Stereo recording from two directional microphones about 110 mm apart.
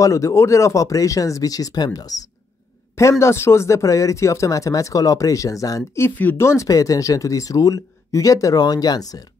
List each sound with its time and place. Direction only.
0.0 s speech: 30° left (ahead or behind)